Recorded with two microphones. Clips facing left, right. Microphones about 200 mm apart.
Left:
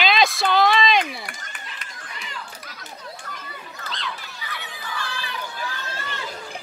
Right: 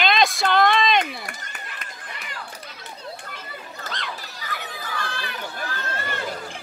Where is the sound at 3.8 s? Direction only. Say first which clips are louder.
Left 1 dB; 45° right (ahead or behind).